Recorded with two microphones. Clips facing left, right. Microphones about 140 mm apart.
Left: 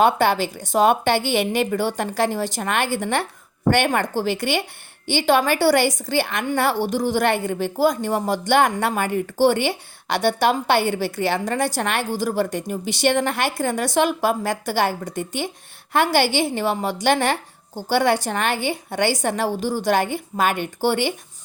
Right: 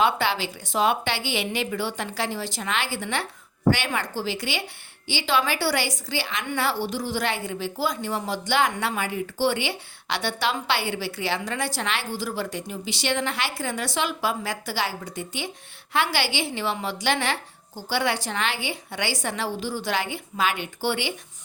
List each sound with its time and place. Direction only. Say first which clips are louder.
0.0 s a woman's voice: left 6 dB; 50° left (ahead or behind)